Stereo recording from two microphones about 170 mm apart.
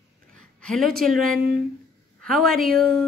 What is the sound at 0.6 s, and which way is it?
A woman's voice, 5° left (ahead or behind).